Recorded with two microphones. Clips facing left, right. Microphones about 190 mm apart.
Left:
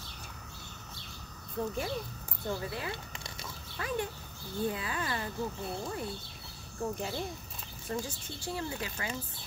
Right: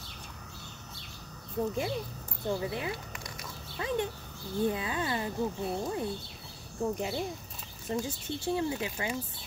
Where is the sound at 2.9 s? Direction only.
30° left (ahead or behind).